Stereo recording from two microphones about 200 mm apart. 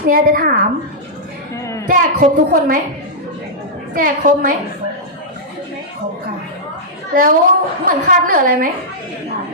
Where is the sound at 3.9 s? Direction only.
45° right (ahead or behind).